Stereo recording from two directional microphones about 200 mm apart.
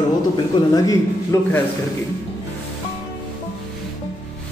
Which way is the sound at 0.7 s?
15° left (ahead or behind).